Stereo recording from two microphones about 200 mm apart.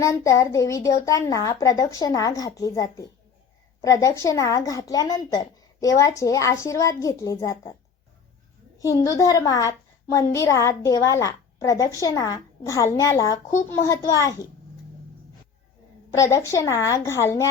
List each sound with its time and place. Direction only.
0.0 s a woman's voice: 15° left (ahead or behind)
8.8 s a woman's voice: 15° left (ahead or behind)
16.1 s a woman's voice: 15° left (ahead or behind)